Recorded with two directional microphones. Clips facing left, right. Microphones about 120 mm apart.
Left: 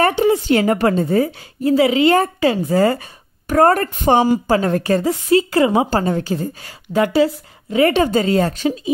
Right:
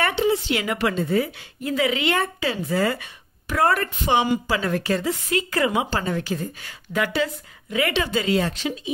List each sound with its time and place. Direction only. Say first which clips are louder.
0.0 s a woman's voice: left 6 dB; 45° left (ahead or behind)